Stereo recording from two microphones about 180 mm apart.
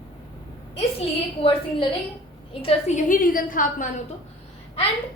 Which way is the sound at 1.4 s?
30° left (ahead or behind).